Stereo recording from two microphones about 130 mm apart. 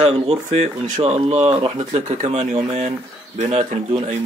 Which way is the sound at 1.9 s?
55° right (ahead or behind).